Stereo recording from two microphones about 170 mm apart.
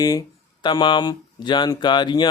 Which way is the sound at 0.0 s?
20° left (ahead or behind).